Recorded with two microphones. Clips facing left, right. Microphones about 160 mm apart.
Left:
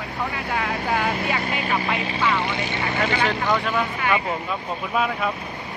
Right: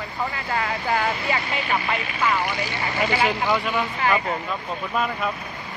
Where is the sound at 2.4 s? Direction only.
20° left (ahead or behind).